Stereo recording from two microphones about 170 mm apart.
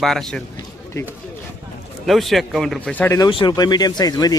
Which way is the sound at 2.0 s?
Centre (ahead or behind).